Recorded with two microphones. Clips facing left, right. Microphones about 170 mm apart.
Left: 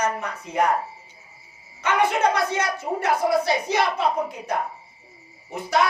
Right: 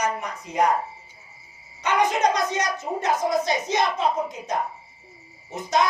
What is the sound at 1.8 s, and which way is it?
Speech, 15° right (ahead or behind).